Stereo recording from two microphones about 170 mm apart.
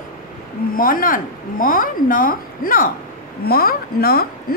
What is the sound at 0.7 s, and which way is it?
A woman's voice, 55° left (ahead or behind).